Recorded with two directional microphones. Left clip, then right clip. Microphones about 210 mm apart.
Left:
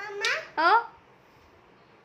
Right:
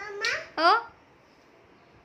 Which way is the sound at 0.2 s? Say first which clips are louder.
Even; 15° right (ahead or behind).